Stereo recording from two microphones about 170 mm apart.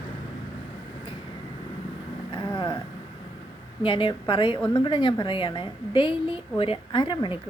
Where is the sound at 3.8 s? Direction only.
30° left (ahead or behind).